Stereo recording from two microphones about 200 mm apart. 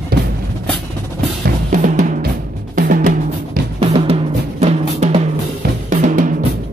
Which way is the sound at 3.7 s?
30° right (ahead or behind).